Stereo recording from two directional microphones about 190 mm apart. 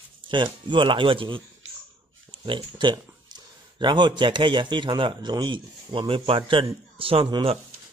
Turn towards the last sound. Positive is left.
turn(degrees=-25)  # may be behind; listen again after turning